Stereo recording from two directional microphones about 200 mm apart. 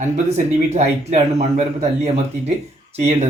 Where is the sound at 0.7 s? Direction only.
35° right (ahead or behind).